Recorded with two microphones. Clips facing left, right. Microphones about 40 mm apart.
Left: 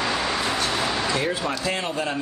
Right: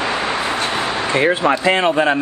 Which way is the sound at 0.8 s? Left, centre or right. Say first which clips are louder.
Right 7 dB; right.